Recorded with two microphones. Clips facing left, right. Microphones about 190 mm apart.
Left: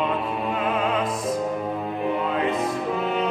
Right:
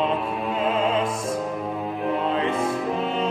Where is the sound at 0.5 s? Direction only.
25° right (ahead or behind).